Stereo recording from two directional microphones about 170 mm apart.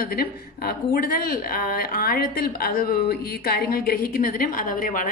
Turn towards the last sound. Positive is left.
turn(degrees=55)  # may be behind; listen again after turning